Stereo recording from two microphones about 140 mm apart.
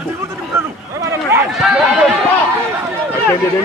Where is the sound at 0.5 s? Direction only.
20° right (ahead or behind).